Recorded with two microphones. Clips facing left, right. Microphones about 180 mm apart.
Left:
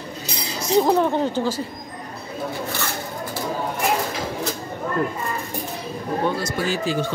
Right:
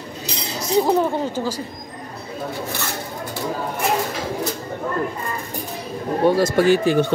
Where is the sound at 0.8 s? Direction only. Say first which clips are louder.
Even; 5° right (ahead or behind).